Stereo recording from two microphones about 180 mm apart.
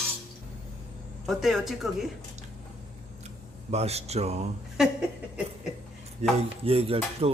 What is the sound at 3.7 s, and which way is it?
Speech, 35° right (ahead or behind).